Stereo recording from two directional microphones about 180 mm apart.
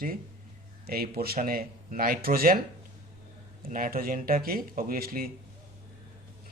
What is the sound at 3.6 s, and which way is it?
Speech, 50° right (ahead or behind).